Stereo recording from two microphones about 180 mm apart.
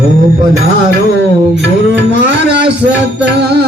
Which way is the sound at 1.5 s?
75° right (ahead or behind).